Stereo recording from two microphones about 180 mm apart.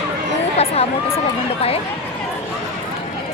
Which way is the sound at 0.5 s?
35° left (ahead or behind).